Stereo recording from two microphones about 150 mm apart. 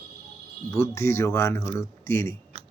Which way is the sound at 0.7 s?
20° left (ahead or behind).